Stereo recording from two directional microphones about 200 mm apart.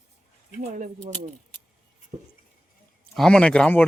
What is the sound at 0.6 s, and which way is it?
Speech, 40° right (ahead or behind).